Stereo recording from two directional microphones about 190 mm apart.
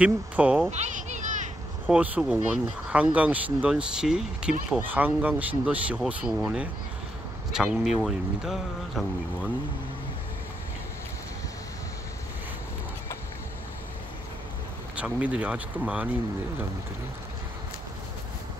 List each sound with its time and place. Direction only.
0.0 s speech: 5° right (ahead or behind)
0.7 s a sound: 35° right (ahead or behind)
1.9 s speech: 5° right (ahead or behind)
15.0 s speech: 10° right (ahead or behind)